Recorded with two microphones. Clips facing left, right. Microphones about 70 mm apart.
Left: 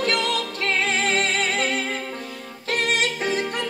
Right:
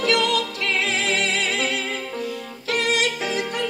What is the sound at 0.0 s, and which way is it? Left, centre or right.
Music, left.